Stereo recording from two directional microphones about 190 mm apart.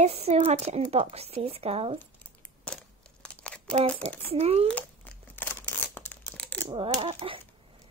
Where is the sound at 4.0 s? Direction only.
30° right (ahead or behind).